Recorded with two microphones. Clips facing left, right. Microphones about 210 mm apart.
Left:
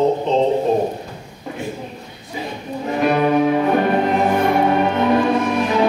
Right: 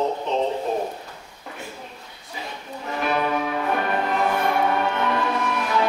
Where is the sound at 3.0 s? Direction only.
20° left (ahead or behind).